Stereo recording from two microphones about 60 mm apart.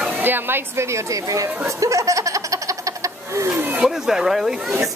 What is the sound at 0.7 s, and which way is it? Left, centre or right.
Speech, right.